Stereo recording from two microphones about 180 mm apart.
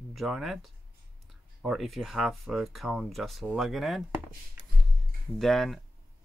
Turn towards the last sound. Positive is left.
turn(degrees=0)  # may be behind; listen again after turning